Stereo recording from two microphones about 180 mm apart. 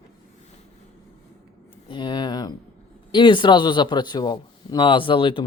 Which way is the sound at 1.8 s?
25° left (ahead or behind).